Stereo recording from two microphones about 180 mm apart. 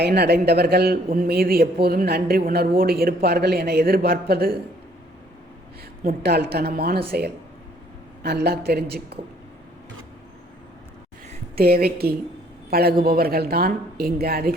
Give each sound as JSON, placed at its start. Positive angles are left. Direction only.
{"t": 0.0, "sound": "speech", "side_deg": -65}
{"t": 6.0, "sound": "speech", "side_deg": -60}
{"t": 11.5, "sound": "speech", "side_deg": -60}